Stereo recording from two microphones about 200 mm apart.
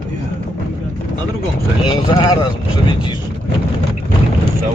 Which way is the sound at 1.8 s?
20° left (ahead or behind).